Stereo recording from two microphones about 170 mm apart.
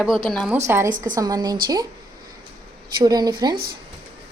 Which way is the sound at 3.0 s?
25° right (ahead or behind).